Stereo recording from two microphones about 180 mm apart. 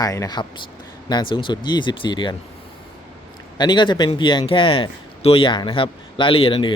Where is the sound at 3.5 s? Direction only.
25° left (ahead or behind).